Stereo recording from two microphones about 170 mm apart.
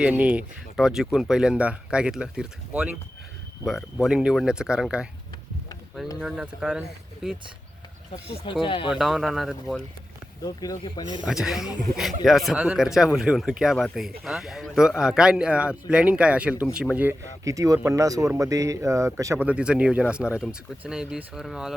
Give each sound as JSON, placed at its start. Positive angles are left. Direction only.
{"t": 0.0, "sound": "speech", "side_deg": -5}
{"t": 6.1, "sound": "speech", "side_deg": 0}
{"t": 8.6, "sound": "speech", "side_deg": 30}
{"t": 8.9, "sound": "speech", "side_deg": 0}
{"t": 10.4, "sound": "speech", "side_deg": 20}
{"t": 11.3, "sound": "speech", "side_deg": -5}